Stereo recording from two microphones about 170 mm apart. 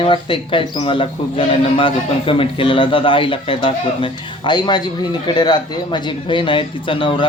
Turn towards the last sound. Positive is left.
turn(degrees=30)  # may be behind; listen again after turning